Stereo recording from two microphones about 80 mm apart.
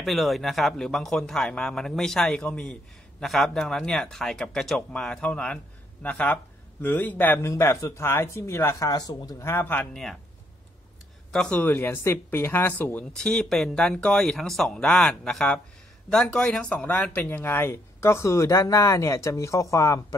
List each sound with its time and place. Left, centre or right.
0.0 s a man's voice: centre; by 7.3 s left
7.4 s speech: left
8.9 s speech: left
9.4 s speech: left
11.3 s a man's voice: centre
11.6 s speech: left
13.1 s a man's voice: centre; by 20.0 s left